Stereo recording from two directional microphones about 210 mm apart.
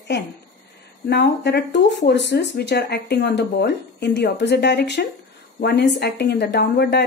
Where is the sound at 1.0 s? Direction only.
55° left (ahead or behind).